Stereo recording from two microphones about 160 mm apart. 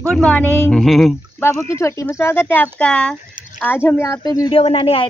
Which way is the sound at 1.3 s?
15° left (ahead or behind).